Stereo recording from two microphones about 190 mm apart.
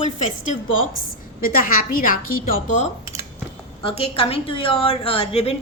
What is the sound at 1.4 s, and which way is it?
A woman's voice, 50° left (ahead or behind).